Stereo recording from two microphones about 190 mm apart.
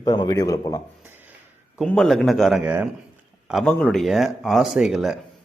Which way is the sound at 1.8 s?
Centre (ahead or behind).